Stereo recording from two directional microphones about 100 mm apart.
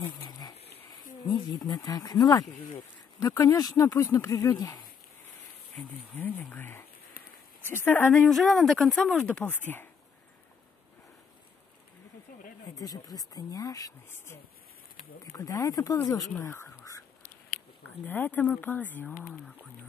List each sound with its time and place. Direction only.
0.0 s a sound: 35° left (ahead or behind)
1.2 s speech: 45° left (ahead or behind)
5.8 s speech: 20° left (ahead or behind)
8.3 s speech: centre (ahead or behind); by 9.8 s 20° left (ahead or behind)
12.7 s speech: 40° left (ahead or behind)
15.3 s speech: 35° left (ahead or behind)
17.8 s speech: 20° left (ahead or behind)